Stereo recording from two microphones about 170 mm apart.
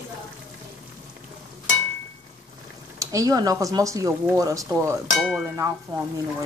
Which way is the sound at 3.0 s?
20° right (ahead or behind).